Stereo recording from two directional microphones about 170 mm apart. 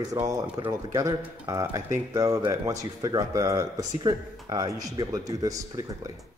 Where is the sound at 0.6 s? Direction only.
25° right (ahead or behind).